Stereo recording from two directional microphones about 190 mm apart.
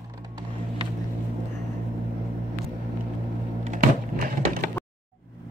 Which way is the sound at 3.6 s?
50° right (ahead or behind).